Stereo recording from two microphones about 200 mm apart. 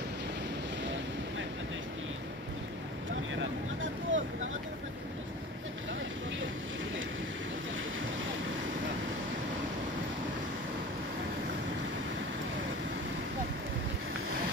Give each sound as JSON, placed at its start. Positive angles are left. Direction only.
{"t": 3.3, "sound": "vehicle", "side_deg": -70}